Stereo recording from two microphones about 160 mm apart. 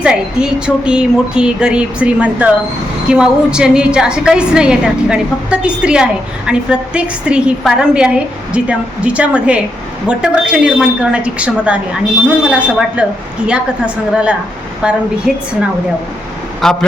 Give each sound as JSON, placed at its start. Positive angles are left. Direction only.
{"t": 0.0, "sound": "a woman's voice", "side_deg": -5}
{"t": 16.6, "sound": "a woman's voice", "side_deg": 5}